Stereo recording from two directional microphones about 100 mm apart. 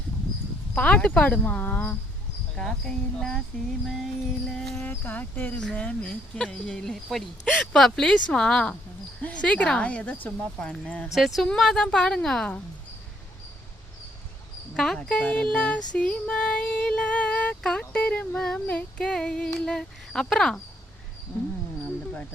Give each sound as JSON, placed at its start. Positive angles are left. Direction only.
{"t": 0.7, "sound": "speech", "side_deg": 15}
{"t": 2.6, "sound": "a woman's voice", "side_deg": 5}
{"t": 4.9, "sound": "speech", "side_deg": 20}
{"t": 11.1, "sound": "a woman's voice", "side_deg": 0}
{"t": 14.8, "sound": "a woman's voice", "side_deg": 5}